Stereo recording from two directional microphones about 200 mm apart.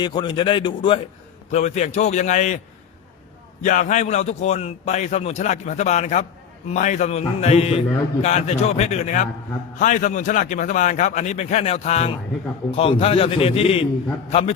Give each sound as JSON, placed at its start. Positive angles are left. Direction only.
{"t": 0.0, "sound": "a man's voice", "side_deg": 20}
{"t": 1.5, "sound": "a man's voice", "side_deg": 35}
{"t": 3.6, "sound": "a man's voice", "side_deg": 40}